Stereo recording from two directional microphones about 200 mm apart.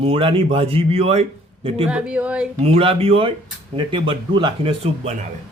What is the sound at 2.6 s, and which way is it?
Speech, 30° right (ahead or behind).